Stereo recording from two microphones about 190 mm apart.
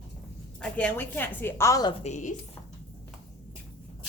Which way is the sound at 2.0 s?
40° left (ahead or behind).